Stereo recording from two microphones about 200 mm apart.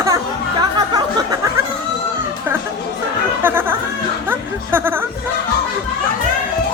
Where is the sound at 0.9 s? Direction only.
20° right (ahead or behind).